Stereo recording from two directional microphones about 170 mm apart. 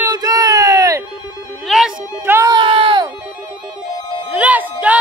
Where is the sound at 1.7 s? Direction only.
5° right (ahead or behind).